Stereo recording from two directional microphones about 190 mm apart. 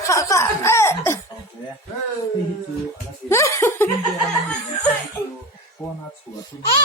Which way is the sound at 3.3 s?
15° left (ahead or behind).